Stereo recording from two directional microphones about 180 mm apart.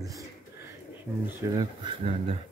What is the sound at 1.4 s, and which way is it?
Speech, 20° right (ahead or behind).